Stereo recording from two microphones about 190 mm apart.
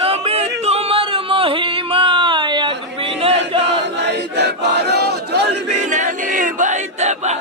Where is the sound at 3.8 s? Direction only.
65° right (ahead or behind).